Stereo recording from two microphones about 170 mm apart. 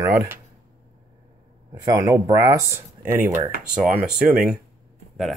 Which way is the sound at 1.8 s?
20° right (ahead or behind).